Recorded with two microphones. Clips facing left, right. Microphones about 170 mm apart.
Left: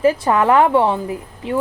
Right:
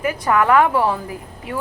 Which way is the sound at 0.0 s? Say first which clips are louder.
Left 4 dB; 25° left (ahead or behind).